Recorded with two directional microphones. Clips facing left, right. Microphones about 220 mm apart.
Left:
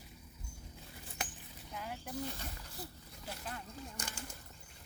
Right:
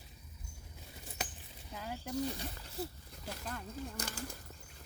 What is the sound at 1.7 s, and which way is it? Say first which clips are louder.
Snake: right 1 dB; 30° right (ahead or behind).